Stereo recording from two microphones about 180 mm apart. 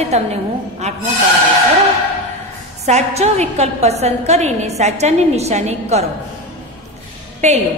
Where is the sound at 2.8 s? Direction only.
35° right (ahead or behind).